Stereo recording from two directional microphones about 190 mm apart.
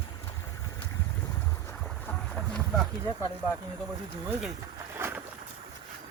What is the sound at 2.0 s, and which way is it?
Boat, 5° left (ahead or behind).